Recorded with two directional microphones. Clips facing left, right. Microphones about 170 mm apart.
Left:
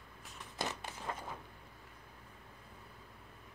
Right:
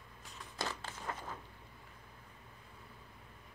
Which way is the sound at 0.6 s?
15° left (ahead or behind).